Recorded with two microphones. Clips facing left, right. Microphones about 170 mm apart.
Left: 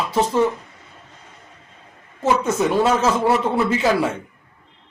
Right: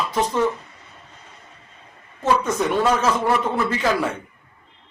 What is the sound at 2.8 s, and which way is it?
A man's voice, 25° left (ahead or behind).